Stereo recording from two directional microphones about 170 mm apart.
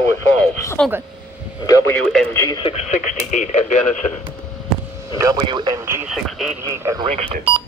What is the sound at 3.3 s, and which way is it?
Speech, 45° left (ahead or behind).